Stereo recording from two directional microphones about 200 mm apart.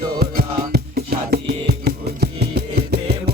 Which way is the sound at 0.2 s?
50° right (ahead or behind).